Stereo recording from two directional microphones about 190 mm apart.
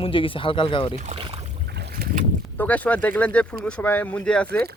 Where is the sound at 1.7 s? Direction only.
60° right (ahead or behind).